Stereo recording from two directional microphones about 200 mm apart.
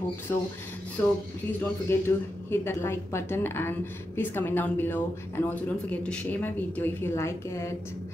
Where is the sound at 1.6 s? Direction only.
10° left (ahead or behind).